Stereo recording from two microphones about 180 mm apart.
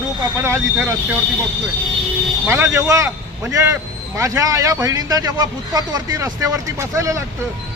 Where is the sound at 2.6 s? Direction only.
15° right (ahead or behind).